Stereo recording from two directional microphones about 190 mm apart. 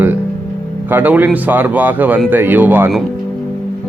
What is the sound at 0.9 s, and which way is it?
Speech, 10° right (ahead or behind).